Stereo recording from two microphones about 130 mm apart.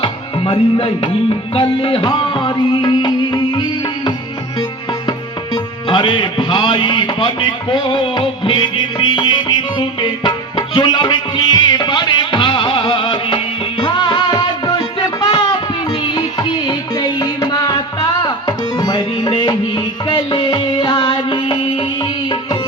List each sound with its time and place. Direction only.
0.0 s music: 45° left (ahead or behind)
5.9 s a man's voice: 35° left (ahead or behind)
10.8 s music: 35° left (ahead or behind)